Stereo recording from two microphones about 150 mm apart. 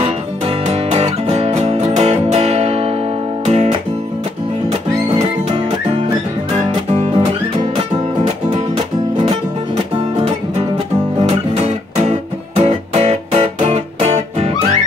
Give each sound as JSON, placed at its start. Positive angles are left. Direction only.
{"t": 0.7, "sound": "music", "side_deg": -45}
{"t": 5.1, "sound": "music", "side_deg": -40}
{"t": 9.9, "sound": "music", "side_deg": -35}
{"t": 11.2, "sound": "music", "side_deg": -45}